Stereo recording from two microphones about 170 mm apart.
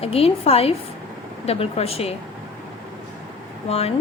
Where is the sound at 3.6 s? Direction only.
35° left (ahead or behind).